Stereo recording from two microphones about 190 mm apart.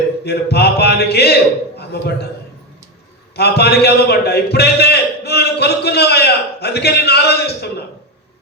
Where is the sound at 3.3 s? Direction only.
60° left (ahead or behind).